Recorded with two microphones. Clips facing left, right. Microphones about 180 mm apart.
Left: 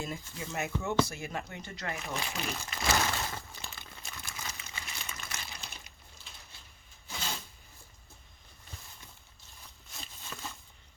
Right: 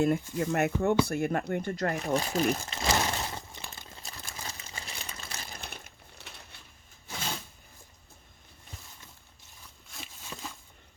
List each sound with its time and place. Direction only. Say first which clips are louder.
0.0 s speech: right 13 dB; 60° right (ahead or behind); by 2.6 s 40° right (ahead or behind)
2.6 s crumpling: right 2 dB; 25° right (ahead or behind)
4.0 s crumpling: right 1 dB; 35° right (ahead or behind)
5.5 s typing: right 5 dB; 55° right (ahead or behind)
10.3 s a sound: right 2 dB; 25° right (ahead or behind)